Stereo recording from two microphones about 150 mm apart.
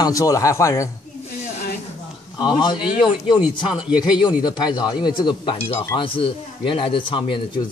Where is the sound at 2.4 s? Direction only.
30° left (ahead or behind).